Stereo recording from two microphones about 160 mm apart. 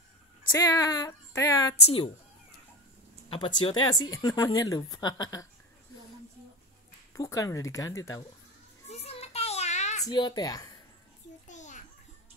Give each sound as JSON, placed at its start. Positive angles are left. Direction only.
{"t": 0.5, "sound": "speech", "side_deg": 20}
{"t": 1.8, "sound": "speech", "side_deg": 40}
{"t": 3.3, "sound": "speech", "side_deg": 30}
{"t": 7.2, "sound": "speech", "side_deg": 20}
{"t": 8.8, "sound": "child singing", "side_deg": 40}
{"t": 10.0, "sound": "speech", "side_deg": 25}
{"t": 11.4, "sound": "a sound", "side_deg": 50}